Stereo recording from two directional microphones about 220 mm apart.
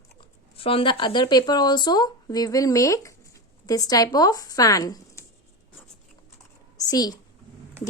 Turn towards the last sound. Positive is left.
turn(degrees=15)  # may be behind; listen again after turning